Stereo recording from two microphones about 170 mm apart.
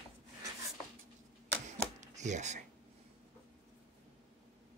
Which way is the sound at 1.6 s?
45° right (ahead or behind).